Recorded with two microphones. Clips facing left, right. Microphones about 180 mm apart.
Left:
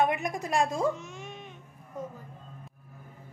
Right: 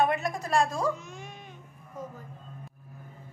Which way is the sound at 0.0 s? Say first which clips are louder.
Right 1 dB; 15° left (ahead or behind).